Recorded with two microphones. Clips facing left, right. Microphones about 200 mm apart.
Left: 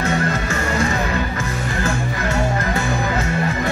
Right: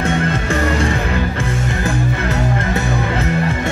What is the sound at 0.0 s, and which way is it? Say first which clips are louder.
Music: right 2 dB; 30° right (ahead or behind).